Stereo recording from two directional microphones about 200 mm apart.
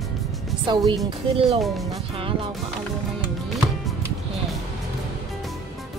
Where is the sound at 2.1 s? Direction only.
25° right (ahead or behind).